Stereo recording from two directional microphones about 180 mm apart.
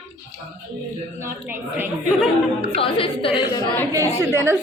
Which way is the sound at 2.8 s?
30° left (ahead or behind).